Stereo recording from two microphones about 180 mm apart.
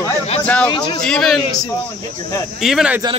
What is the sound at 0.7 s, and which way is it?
Speech, 25° left (ahead or behind).